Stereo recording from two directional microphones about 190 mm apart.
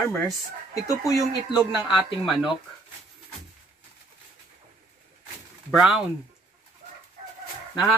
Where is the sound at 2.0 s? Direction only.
Centre (ahead or behind).